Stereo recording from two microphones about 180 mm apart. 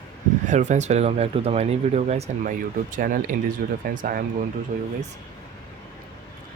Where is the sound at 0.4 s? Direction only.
40° right (ahead or behind).